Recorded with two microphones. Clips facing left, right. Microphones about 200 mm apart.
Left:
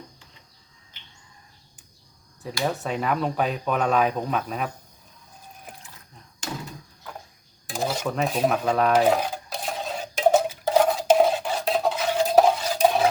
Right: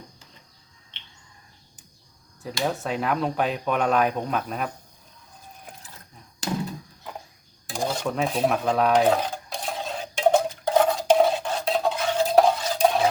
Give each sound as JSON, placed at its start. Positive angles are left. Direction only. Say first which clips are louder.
{"t": 0.9, "sound": "bird", "louder": "right 1 dB", "side_deg": -30}
{"t": 2.6, "sound": "speech", "louder": "even", "side_deg": 0}
{"t": 7.7, "sound": "dishes", "louder": "even", "side_deg": 5}